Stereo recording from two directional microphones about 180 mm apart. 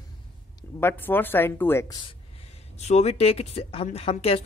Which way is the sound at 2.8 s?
40° left (ahead or behind).